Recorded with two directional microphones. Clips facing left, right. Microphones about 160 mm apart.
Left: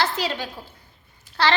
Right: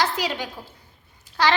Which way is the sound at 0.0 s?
15° right (ahead or behind).